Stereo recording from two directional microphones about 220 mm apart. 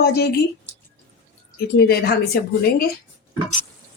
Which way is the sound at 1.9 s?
45° left (ahead or behind).